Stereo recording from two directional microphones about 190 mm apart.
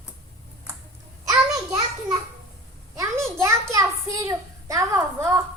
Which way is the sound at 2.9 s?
15° right (ahead or behind).